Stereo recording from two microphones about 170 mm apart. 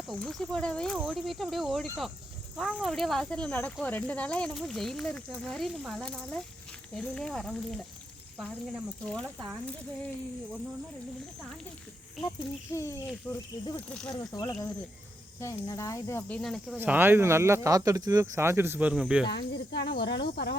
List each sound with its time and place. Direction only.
0.1 s speech: 5° left (ahead or behind)
8.4 s speech: 5° right (ahead or behind)
9.0 s speech: 5° left (ahead or behind)
12.7 s speech: 15° left (ahead or behind)
16.4 s speech: centre (ahead or behind)
16.7 s speech: 10° right (ahead or behind)
19.3 s speech: 85° left